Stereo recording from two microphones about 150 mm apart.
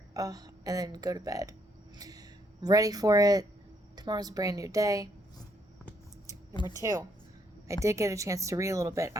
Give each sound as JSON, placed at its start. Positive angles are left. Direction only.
{"t": 0.1, "sound": "speech", "side_deg": -25}
{"t": 6.2, "sound": "a sound", "side_deg": 30}
{"t": 7.7, "sound": "speech", "side_deg": -20}